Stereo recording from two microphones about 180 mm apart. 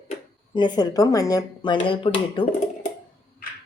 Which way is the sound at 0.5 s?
25° left (ahead or behind).